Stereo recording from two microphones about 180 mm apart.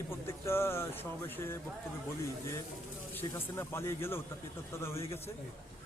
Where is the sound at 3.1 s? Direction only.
10° left (ahead or behind).